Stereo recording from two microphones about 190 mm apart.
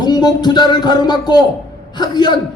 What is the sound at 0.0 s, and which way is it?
A man's voice, 20° left (ahead or behind).